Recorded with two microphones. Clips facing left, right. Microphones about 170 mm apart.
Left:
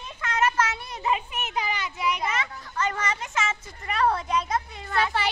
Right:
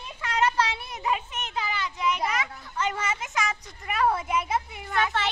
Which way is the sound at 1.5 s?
15° left (ahead or behind).